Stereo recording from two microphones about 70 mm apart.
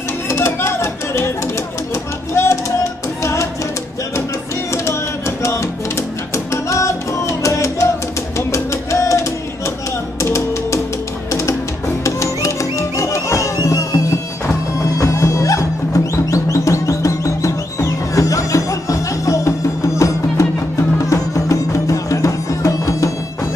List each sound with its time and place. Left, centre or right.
0.3 s music: left
2.3 s music: left
6.3 s music: left
10.2 s music: left
12.0 s music: left